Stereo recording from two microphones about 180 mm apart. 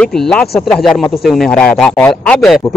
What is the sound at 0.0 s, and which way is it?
Speech, 5° left (ahead or behind).